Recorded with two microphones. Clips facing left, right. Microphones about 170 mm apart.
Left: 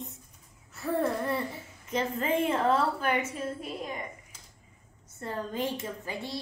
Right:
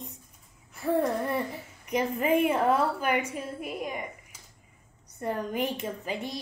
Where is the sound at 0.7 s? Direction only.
15° right (ahead or behind).